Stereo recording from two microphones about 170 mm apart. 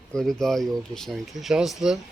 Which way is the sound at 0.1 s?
5° left (ahead or behind).